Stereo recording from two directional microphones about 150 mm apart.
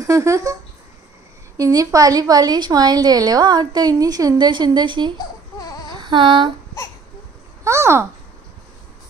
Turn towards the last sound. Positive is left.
turn(degrees=-20)  # may be behind; listen again after turning